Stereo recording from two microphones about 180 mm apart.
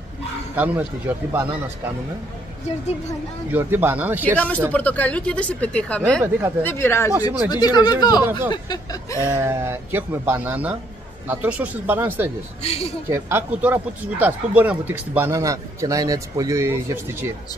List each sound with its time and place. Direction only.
0.6 s speech: 10° right (ahead or behind)
3.5 s speech: 10° right (ahead or behind)
4.4 s speech: 5° left (ahead or behind); by 9.2 s 25° left (ahead or behind)
9.2 s speech: 15° right (ahead or behind)
12.6 s speech: 35° left (ahead or behind)
13.1 s speech: 10° right (ahead or behind)